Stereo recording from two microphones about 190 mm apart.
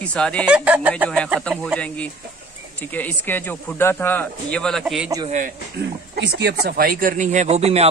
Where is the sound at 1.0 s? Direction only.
5° left (ahead or behind).